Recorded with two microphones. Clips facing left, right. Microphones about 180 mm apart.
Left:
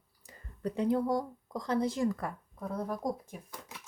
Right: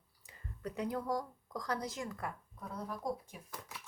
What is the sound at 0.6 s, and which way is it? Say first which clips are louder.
Speech: left 8 dB; 30° left (ahead or behind).